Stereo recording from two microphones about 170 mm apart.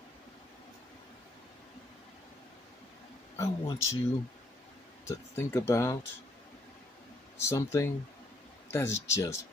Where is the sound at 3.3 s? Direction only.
15° left (ahead or behind).